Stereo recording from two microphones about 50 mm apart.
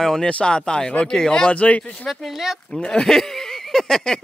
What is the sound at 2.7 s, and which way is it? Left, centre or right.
Speech, centre.